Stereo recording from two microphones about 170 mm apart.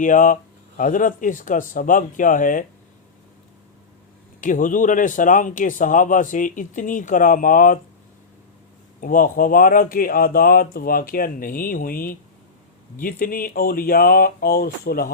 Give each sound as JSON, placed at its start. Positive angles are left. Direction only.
{"t": 0.0, "sound": "speech", "side_deg": 50}
{"t": 4.4, "sound": "speech", "side_deg": 50}
{"t": 9.0, "sound": "speech", "side_deg": 55}